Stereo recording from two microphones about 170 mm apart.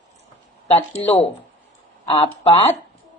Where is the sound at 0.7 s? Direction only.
35° left (ahead or behind).